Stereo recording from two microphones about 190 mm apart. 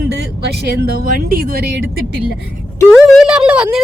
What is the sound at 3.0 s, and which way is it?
Speech, centre (ahead or behind).